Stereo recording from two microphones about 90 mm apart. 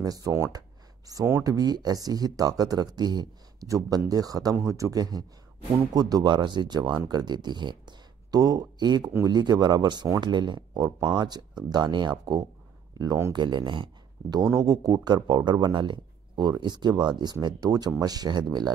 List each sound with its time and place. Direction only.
0.0 s speech: 40° right (ahead or behind)
13.3 s speech: 55° right (ahead or behind)
14.3 s speech: 45° right (ahead or behind)